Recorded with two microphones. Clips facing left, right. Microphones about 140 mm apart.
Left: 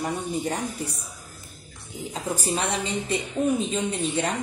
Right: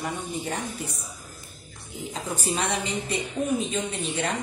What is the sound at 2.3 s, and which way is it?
A woman's voice, 35° left (ahead or behind).